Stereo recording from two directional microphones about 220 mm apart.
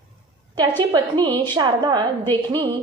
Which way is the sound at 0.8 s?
20° right (ahead or behind).